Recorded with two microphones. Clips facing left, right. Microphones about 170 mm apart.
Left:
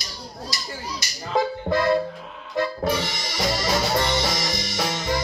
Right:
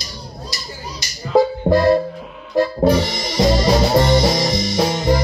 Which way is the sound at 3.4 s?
25° right (ahead or behind).